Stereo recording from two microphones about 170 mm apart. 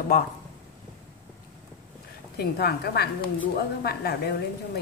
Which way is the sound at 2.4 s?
65° left (ahead or behind).